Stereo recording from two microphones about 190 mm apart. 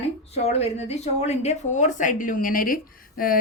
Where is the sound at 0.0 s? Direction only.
35° left (ahead or behind).